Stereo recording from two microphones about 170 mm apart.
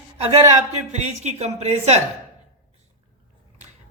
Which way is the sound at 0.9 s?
40° right (ahead or behind).